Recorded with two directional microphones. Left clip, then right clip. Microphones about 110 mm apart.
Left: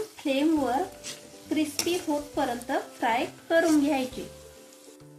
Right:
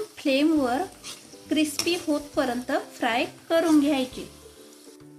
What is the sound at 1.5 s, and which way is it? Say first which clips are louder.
Speech: right 3 dB; 60° right (ahead or behind).